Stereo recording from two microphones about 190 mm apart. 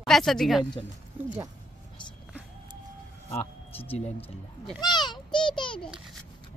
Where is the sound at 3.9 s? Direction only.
30° left (ahead or behind).